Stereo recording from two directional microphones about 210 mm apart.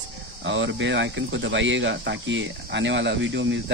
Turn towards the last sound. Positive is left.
turn(degrees=-60)  # may be behind; listen again after turning